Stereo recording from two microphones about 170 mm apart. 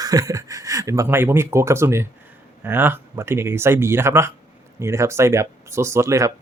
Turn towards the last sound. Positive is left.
turn(degrees=-15)  # may be behind; listen again after turning